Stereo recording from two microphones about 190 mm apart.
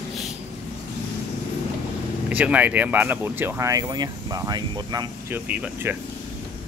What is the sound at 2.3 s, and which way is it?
Speech, 5° right (ahead or behind).